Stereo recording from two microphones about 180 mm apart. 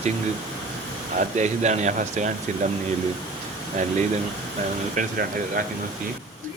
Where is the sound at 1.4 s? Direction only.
40° right (ahead or behind).